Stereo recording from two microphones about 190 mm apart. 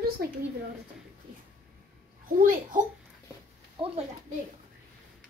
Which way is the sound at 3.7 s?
30° right (ahead or behind).